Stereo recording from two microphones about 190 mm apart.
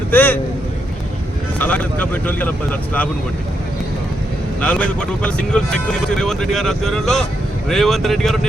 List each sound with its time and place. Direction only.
0.1 s a man's voice: 10° left (ahead or behind)
1.5 s speech: 10° left (ahead or behind)
4.6 s speech: 5° left (ahead or behind)